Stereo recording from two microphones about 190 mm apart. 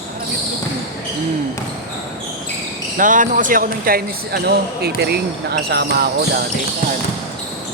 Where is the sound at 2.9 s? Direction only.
45° right (ahead or behind).